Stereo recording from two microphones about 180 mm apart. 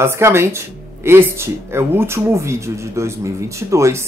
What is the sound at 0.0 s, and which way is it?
Speech, 15° right (ahead or behind).